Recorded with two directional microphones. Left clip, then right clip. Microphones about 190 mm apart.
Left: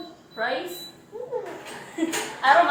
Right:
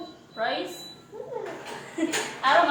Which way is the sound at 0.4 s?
15° right (ahead or behind).